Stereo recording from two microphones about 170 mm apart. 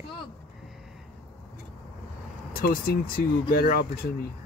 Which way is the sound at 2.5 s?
60° left (ahead or behind).